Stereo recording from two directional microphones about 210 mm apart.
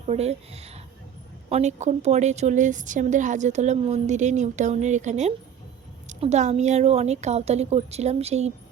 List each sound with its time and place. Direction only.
0.0 s a woman's voice: 30° right (ahead or behind)